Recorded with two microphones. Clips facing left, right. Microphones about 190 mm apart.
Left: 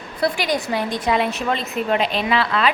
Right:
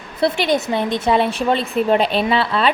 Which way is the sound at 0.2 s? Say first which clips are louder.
Right 4 dB; 25° right (ahead or behind).